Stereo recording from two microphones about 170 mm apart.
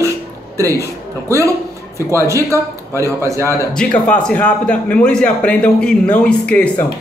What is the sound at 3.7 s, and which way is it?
A man's voice, 5° left (ahead or behind).